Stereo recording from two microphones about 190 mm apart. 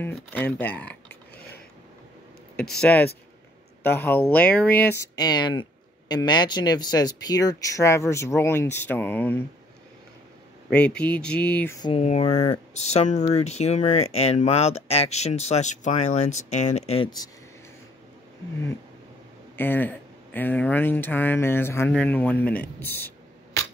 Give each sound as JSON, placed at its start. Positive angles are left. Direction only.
{"t": 0.0, "sound": "speech", "side_deg": 10}
{"t": 2.5, "sound": "speech", "side_deg": 5}
{"t": 10.7, "sound": "speech", "side_deg": 5}
{"t": 11.8, "sound": "speech", "side_deg": 30}
{"t": 19.5, "sound": "speech", "side_deg": 10}